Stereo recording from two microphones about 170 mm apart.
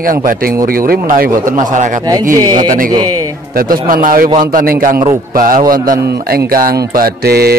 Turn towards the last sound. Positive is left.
turn(degrees=-65)  # may be behind; listen again after turning